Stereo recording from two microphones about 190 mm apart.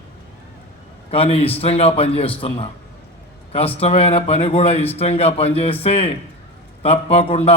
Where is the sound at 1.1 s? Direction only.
30° left (ahead or behind).